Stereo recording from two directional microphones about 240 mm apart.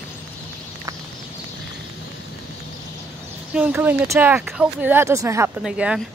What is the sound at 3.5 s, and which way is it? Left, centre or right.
Speech, centre.